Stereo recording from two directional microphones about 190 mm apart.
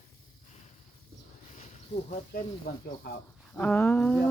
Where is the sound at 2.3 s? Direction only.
50° left (ahead or behind).